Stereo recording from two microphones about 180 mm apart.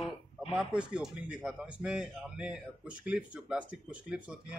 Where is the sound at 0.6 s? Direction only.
5° right (ahead or behind).